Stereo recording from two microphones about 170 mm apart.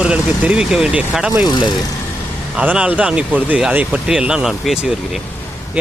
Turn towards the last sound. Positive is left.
turn(degrees=-5)  # may be behind; listen again after turning